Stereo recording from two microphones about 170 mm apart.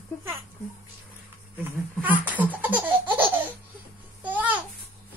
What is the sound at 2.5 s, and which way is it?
Laughter, 10° right (ahead or behind).